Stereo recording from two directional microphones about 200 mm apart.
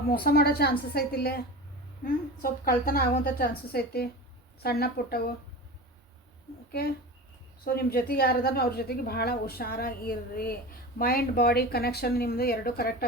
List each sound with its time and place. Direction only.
0.1 s a woman's voice: 50° left (ahead or behind)
6.7 s a woman's voice: 50° left (ahead or behind)